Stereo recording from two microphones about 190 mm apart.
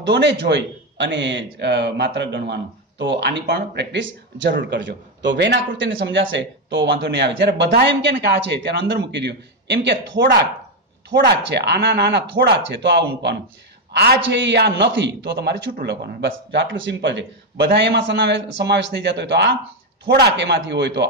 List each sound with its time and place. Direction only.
0.0 s a man's voice: 65° right (ahead or behind)